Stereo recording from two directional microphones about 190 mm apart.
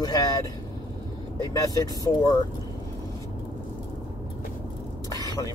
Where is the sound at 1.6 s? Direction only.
20° left (ahead or behind).